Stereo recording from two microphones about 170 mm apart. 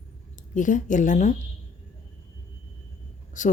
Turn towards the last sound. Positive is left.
turn(degrees=45)  # may be behind; listen again after turning